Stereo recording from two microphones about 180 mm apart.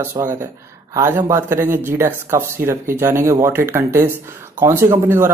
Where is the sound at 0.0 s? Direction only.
15° right (ahead or behind).